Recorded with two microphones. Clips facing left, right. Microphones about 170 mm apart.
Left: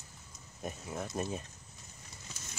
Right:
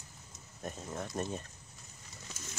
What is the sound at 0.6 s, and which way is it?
Speech, 5° left (ahead or behind).